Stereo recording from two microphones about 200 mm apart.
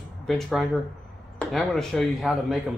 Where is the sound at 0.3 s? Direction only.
Centre (ahead or behind).